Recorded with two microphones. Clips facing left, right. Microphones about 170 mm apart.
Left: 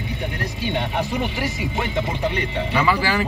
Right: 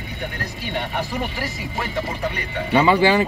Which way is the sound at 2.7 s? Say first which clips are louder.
Right 7 dB; 25° right (ahead or behind).